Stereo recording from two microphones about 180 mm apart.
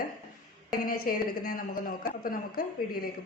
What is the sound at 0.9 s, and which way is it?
A woman's voice, 50° left (ahead or behind).